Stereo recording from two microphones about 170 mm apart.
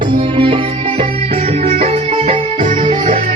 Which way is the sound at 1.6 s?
35° right (ahead or behind).